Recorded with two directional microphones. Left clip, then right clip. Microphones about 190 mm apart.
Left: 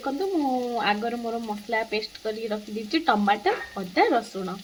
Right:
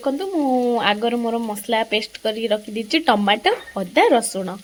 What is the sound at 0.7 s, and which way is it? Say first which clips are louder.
Speech: right 6 dB; 50° right (ahead or behind).